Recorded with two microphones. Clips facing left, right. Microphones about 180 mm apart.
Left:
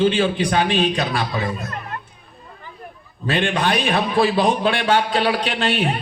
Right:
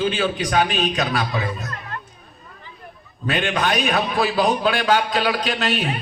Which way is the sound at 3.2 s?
30° left (ahead or behind).